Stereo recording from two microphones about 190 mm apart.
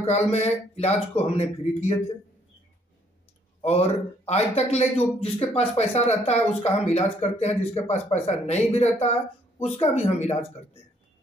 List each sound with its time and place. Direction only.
0.0 s speech: 35° left (ahead or behind)
3.6 s speech: 35° left (ahead or behind)